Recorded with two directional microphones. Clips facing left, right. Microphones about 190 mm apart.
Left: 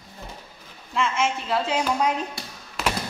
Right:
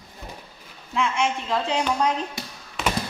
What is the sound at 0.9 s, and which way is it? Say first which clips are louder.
A woman's voice: even; centre (ahead or behind).